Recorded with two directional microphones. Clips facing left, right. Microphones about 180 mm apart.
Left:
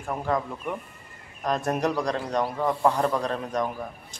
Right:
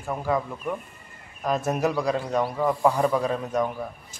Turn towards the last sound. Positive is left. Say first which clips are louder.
# right 1 dB
turn(degrees=-5)  # may be behind; listen again after turning